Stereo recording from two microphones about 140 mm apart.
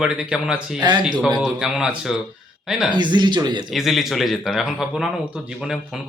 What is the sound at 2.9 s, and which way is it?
Speech, 30° right (ahead or behind).